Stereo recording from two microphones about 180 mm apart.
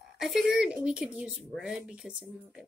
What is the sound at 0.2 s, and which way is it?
Speech, centre (ahead or behind).